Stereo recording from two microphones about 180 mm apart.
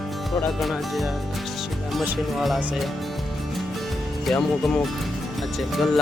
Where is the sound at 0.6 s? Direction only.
Centre (ahead or behind).